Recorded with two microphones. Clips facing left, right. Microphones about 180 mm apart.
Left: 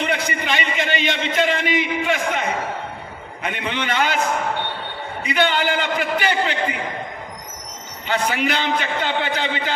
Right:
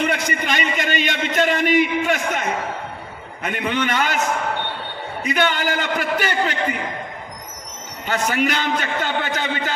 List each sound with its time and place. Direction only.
0.0 s a man's voice: 45° right (ahead or behind)
3.4 s a man's voice: 45° right (ahead or behind)
5.2 s a man's voice: 45° right (ahead or behind)
8.1 s a man's voice: 45° right (ahead or behind)